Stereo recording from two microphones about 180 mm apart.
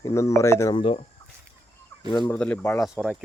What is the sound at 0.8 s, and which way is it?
Speech, 30° left (ahead or behind).